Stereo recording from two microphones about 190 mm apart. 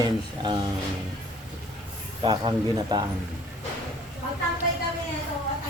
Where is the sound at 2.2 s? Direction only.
25° right (ahead or behind).